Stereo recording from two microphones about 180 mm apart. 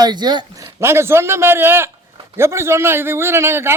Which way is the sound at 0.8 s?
15° right (ahead or behind).